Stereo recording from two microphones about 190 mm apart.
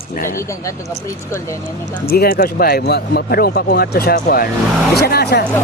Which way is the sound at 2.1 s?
55° left (ahead or behind).